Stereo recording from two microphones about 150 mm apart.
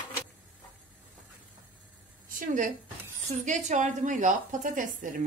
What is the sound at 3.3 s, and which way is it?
A woman's voice, 50° right (ahead or behind).